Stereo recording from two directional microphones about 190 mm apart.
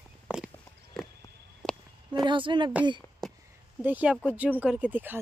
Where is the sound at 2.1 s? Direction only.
25° right (ahead or behind).